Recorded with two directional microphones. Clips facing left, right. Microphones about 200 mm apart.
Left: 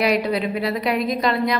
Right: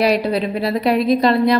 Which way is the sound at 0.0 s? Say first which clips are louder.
Right 3 dB; 35° right (ahead or behind).